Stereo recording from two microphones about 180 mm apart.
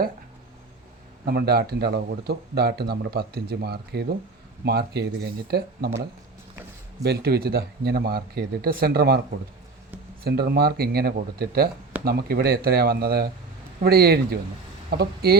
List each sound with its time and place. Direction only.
1.2 s speech: 60° right (ahead or behind)
10.2 s speech: 60° right (ahead or behind)